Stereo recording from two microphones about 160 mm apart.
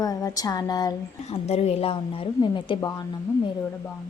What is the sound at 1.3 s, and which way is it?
A woman's voice, 40° left (ahead or behind).